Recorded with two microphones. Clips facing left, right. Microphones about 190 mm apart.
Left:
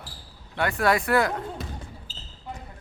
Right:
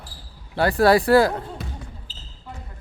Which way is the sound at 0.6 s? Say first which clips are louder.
Right 7 dB; 35° right (ahead or behind).